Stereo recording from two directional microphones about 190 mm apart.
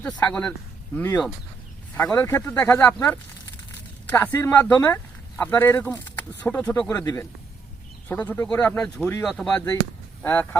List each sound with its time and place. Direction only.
0.2 s speech: 5° left (ahead or behind)
7.0 s a man's voice: 20° left (ahead or behind)